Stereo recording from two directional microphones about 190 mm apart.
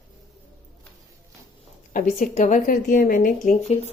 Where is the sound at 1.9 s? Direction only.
45° left (ahead or behind).